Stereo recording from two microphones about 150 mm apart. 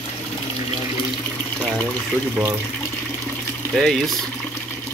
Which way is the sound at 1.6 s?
10° left (ahead or behind).